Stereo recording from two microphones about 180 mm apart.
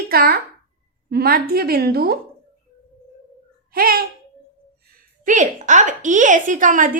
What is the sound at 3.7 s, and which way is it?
Speech, 55° right (ahead or behind).